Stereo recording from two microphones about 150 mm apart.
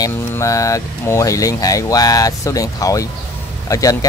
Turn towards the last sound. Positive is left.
turn(degrees=25)  # may be behind; listen again after turning